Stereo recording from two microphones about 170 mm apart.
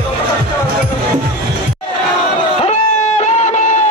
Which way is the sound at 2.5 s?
40° left (ahead or behind).